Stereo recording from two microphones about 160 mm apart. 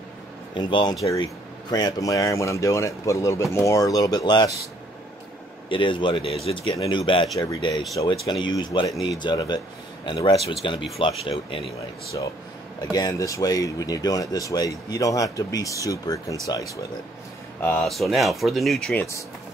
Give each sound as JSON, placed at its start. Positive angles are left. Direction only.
{"t": 0.6, "sound": "speech", "side_deg": 30}
{"t": 5.7, "sound": "speech", "side_deg": 30}
{"t": 12.9, "sound": "speech", "side_deg": 25}
{"t": 17.6, "sound": "speech", "side_deg": 10}
{"t": 17.8, "sound": "speech", "side_deg": 0}